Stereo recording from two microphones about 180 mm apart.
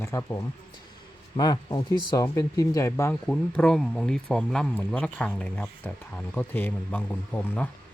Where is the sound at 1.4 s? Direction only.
20° left (ahead or behind).